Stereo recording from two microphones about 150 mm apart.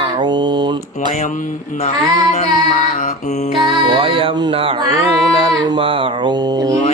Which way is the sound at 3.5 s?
35° right (ahead or behind).